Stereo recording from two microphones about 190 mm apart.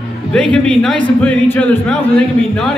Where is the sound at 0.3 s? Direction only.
5° left (ahead or behind).